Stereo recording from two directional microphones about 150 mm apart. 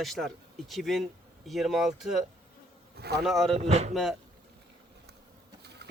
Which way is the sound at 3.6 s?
45° right (ahead or behind).